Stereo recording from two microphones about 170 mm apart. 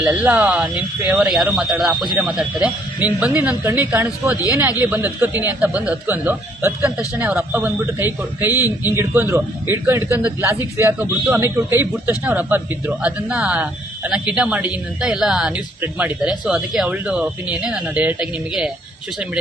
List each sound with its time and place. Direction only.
0.0 s a man's voice: 10° right (ahead or behind)
8.5 s a man's voice: 20° left (ahead or behind)
8.9 s a man's voice: 15° right (ahead or behind)